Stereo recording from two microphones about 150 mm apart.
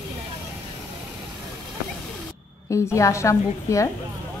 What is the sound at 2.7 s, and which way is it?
Speech, 20° left (ahead or behind).